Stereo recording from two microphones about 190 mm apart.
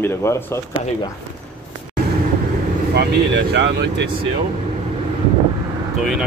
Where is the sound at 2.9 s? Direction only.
65° right (ahead or behind).